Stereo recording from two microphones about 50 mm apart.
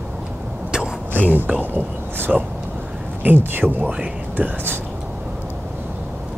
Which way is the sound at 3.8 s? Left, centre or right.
Right.